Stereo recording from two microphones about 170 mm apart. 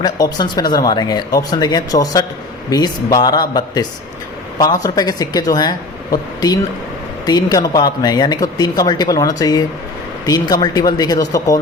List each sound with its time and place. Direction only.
0.0 s speech: 25° left (ahead or behind)
4.8 s speech: 20° left (ahead or behind)